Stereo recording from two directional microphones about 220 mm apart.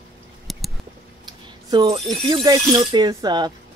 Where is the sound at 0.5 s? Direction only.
Centre (ahead or behind).